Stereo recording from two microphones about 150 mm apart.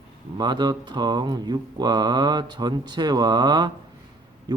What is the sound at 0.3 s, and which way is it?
Mantra, 30° right (ahead or behind).